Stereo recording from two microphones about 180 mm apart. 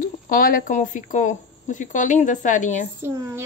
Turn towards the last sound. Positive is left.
turn(degrees=-15)  # may be behind; listen again after turning